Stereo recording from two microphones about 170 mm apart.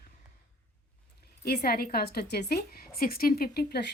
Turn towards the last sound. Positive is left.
turn(degrees=65)  # may be behind; listen again after turning